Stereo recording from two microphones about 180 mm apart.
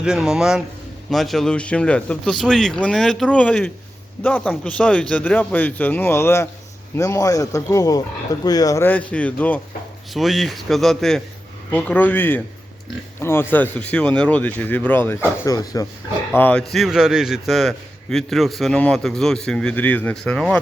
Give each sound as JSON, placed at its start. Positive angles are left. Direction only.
{"t": 0.0, "sound": "a man's voice", "side_deg": -5}
{"t": 16.7, "sound": "a man's voice", "side_deg": 0}